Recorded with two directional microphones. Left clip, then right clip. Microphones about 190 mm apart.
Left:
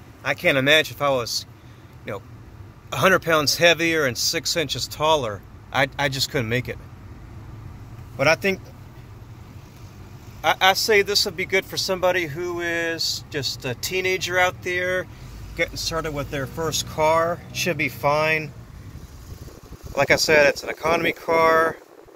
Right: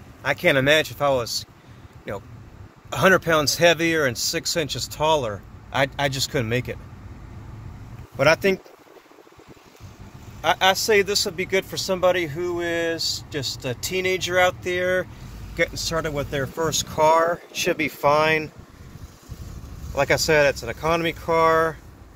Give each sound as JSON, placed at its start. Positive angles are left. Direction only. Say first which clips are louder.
{"t": 0.2, "sound": "speech", "louder": "right 1 dB", "side_deg": -20}
{"t": 8.2, "sound": "speech", "louder": "right 1 dB", "side_deg": -25}
{"t": 10.4, "sound": "speech", "louder": "left 1 dB", "side_deg": -10}
{"t": 19.9, "sound": "speech", "louder": "left 2 dB", "side_deg": -5}